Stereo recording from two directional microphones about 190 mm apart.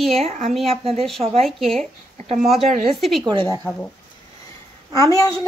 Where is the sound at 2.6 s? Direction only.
35° right (ahead or behind).